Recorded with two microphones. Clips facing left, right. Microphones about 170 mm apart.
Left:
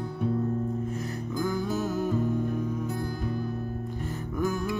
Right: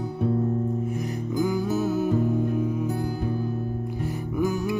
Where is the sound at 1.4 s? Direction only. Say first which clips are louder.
Right 4 dB; 15° right (ahead or behind).